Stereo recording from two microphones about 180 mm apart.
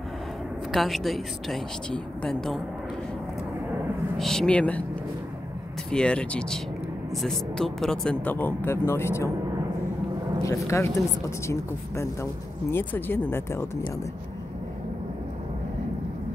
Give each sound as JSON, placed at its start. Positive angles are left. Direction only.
{"t": 0.7, "sound": "speech", "side_deg": 0}
{"t": 4.2, "sound": "speech", "side_deg": 5}
{"t": 5.9, "sound": "speech", "side_deg": 5}
{"t": 10.4, "sound": "speech", "side_deg": 15}